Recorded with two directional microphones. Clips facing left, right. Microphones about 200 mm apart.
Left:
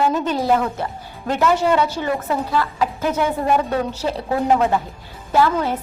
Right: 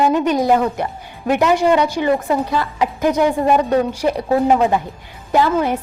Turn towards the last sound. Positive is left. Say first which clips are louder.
# right 2 dB
turn(degrees=-15)  # may be behind; listen again after turning